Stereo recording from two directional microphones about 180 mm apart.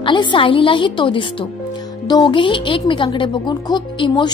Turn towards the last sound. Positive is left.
turn(degrees=25)  # may be behind; listen again after turning